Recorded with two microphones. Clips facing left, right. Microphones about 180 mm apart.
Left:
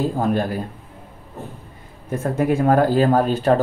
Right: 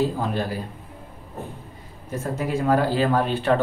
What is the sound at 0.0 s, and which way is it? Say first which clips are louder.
Speech: left 4 dB; 50° left (ahead or behind).